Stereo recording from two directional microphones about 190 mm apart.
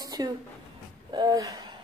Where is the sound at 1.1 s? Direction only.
20° right (ahead or behind).